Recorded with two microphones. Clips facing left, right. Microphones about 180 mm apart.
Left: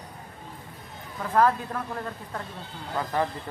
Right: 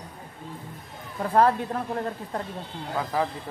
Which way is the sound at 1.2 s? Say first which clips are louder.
Right 2 dB; 30° right (ahead or behind).